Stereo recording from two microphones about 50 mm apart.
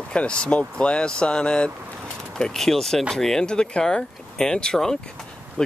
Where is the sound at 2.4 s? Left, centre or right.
Centre.